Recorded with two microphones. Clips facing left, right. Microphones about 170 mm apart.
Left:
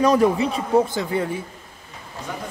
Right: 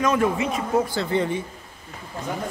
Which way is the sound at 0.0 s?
35° left (ahead or behind).